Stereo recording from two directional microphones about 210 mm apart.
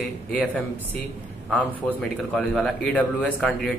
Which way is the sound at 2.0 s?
Centre (ahead or behind).